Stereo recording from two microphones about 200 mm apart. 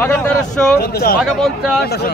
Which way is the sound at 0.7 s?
50° left (ahead or behind).